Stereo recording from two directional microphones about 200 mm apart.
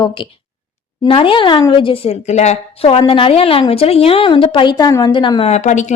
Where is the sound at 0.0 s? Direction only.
25° left (ahead or behind).